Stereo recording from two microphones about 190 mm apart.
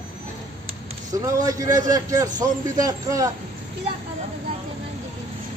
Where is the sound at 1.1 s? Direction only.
20° right (ahead or behind).